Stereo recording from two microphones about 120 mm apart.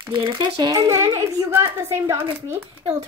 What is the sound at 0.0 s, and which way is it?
Speech, 40° right (ahead or behind).